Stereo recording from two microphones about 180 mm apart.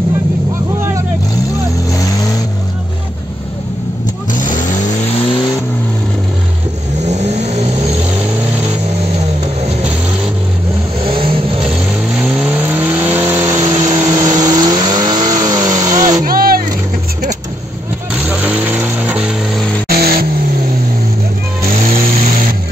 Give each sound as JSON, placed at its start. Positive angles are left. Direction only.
{"t": 4.3, "sound": "vehicle", "side_deg": 45}
{"t": 7.1, "sound": "vehicle", "side_deg": -40}
{"t": 11.1, "sound": "vehicle", "side_deg": -30}
{"t": 12.2, "sound": "vehicle", "side_deg": -5}
{"t": 16.3, "sound": "vehicle", "side_deg": -55}
{"t": 18.3, "sound": "music", "side_deg": -10}
{"t": 19.9, "sound": "vehicle", "side_deg": -55}
{"t": 21.8, "sound": "vehicle", "side_deg": -35}